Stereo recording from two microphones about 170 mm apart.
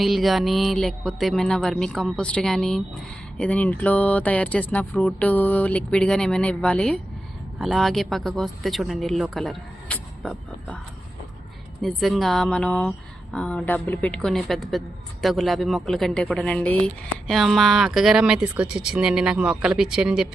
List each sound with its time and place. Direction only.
0.0 s a woman's voice: centre (ahead or behind)
11.8 s a woman's voice: centre (ahead or behind)